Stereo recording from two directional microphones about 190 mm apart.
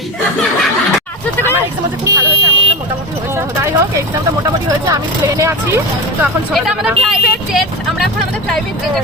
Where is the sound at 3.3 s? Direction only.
15° right (ahead or behind).